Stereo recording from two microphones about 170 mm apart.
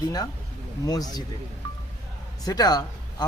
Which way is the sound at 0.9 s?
20° left (ahead or behind).